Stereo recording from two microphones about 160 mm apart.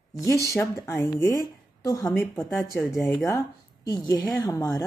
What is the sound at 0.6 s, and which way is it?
A woman's voice, 15° left (ahead or behind).